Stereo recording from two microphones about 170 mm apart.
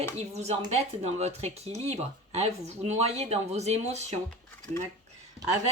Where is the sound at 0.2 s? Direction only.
40° right (ahead or behind).